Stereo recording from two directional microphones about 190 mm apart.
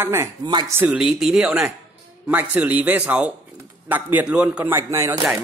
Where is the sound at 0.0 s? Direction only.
15° right (ahead or behind).